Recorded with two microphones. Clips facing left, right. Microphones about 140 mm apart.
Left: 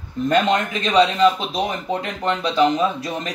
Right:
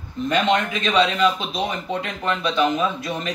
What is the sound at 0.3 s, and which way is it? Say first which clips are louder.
A man's voice: left 1 dB; 35° left (ahead or behind).